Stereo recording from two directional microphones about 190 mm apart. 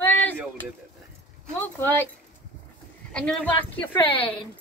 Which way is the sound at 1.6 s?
10° left (ahead or behind).